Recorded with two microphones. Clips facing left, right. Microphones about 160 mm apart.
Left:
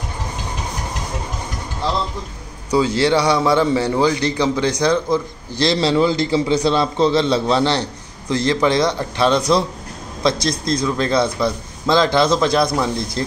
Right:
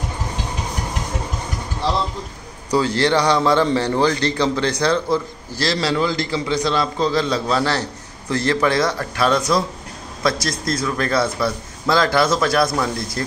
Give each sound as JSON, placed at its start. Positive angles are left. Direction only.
{"t": 2.7, "sound": "a man's voice", "side_deg": 10}